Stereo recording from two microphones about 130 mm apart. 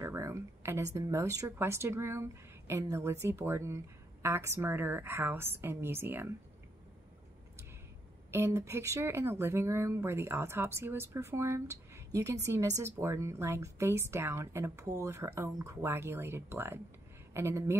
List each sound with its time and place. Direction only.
0.0 s speech: 20° right (ahead or behind)
8.3 s speech: 20° right (ahead or behind)